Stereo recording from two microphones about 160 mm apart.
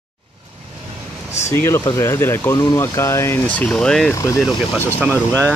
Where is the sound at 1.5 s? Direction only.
15° left (ahead or behind).